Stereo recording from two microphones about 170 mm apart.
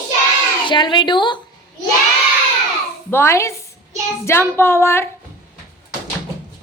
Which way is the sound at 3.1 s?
15° left (ahead or behind).